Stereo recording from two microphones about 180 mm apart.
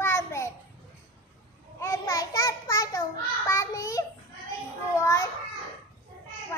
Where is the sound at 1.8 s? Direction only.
20° left (ahead or behind).